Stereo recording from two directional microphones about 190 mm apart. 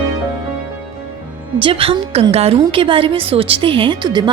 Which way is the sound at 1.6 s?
30° right (ahead or behind).